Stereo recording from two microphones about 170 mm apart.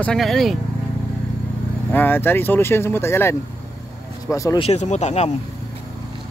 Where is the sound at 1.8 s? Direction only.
10° left (ahead or behind).